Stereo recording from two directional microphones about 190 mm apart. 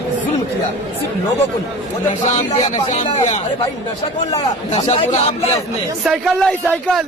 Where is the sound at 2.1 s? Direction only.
40° left (ahead or behind).